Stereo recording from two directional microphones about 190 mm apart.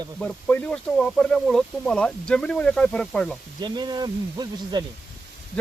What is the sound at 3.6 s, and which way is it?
Speech, 25° right (ahead or behind).